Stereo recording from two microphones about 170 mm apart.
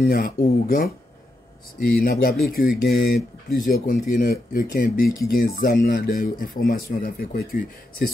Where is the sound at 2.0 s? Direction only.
60° left (ahead or behind).